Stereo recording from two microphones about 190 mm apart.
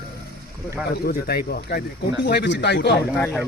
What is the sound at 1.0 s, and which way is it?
A man's voice, 55° left (ahead or behind).